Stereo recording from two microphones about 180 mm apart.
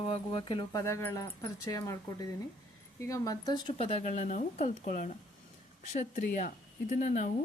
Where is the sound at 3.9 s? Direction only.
40° left (ahead or behind).